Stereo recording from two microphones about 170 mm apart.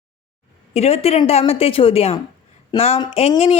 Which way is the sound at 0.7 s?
35° left (ahead or behind).